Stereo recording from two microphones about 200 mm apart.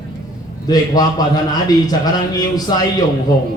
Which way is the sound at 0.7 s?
20° left (ahead or behind).